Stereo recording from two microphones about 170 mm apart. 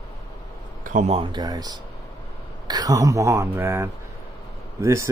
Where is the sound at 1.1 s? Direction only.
25° right (ahead or behind).